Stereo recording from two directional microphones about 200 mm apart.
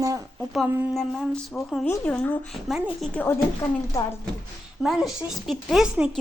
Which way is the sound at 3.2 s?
10° left (ahead or behind).